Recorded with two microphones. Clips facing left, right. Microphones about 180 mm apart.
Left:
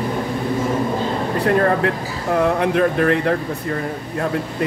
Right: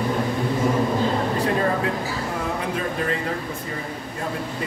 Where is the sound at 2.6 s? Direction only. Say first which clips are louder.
Left 9 dB; 65° left (ahead or behind).